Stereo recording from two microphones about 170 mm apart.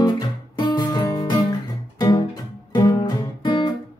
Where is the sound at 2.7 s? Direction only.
25° left (ahead or behind).